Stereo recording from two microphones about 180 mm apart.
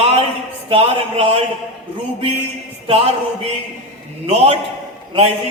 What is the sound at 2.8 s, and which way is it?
Speech, 30° right (ahead or behind).